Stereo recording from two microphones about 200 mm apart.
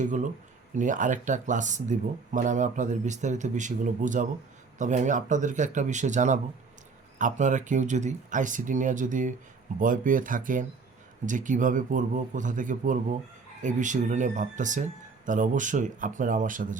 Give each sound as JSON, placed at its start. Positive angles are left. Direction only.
{"t": 0.0, "sound": "speech", "side_deg": -40}